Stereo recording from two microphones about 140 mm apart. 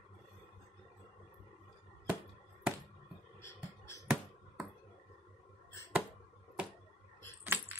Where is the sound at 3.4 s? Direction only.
20° left (ahead or behind).